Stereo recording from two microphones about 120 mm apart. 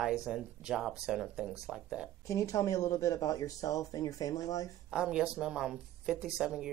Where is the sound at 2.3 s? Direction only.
25° left (ahead or behind).